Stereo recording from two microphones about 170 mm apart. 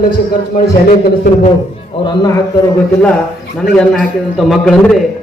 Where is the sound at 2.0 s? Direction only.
20° left (ahead or behind).